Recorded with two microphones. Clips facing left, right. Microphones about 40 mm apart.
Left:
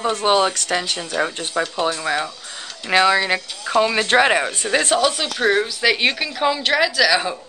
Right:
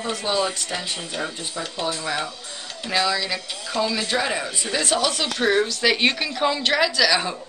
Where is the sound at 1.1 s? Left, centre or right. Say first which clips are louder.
Left 10 dB; left.